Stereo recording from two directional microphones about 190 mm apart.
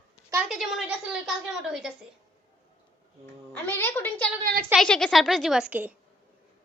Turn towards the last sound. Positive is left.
turn(degrees=-5)  # may be behind; listen again after turning